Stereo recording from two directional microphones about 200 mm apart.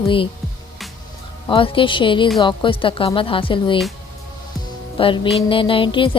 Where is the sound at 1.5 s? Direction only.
25° left (ahead or behind).